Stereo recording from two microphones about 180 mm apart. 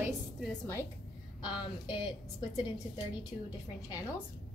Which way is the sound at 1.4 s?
25° left (ahead or behind).